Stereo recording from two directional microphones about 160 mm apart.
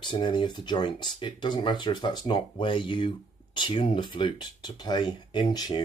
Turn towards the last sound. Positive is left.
turn(degrees=25)  # may be behind; listen again after turning